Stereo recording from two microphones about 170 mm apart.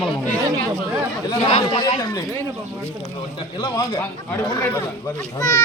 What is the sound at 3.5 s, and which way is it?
A man's voice, 15° left (ahead or behind).